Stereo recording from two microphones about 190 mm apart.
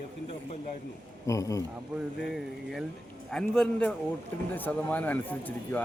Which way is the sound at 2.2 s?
Centre (ahead or behind).